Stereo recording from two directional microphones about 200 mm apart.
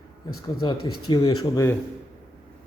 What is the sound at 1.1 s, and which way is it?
Speech, 20° left (ahead or behind).